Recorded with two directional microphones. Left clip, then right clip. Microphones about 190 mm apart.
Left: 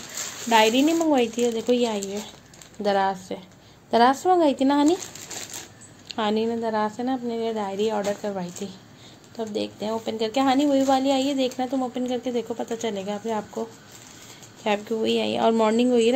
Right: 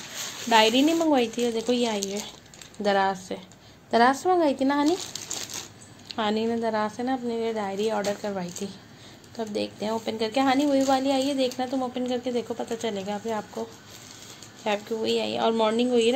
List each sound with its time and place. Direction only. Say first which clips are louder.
0.5 s a woman's voice: left 1 dB; 10° left (ahead or behind)
6.0 s a woman's voice: left 2 dB; 15° left (ahead or behind)